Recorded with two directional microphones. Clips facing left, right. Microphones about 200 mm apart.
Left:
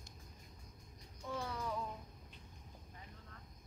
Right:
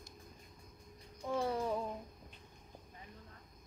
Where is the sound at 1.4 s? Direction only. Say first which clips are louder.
Right 8 dB; 30° right (ahead or behind).